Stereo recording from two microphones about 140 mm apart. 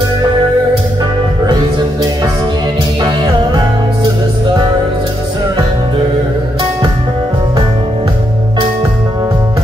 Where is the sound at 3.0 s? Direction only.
30° right (ahead or behind).